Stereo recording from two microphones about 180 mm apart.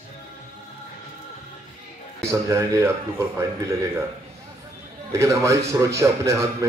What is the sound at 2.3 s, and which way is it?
A man's voice, 15° right (ahead or behind).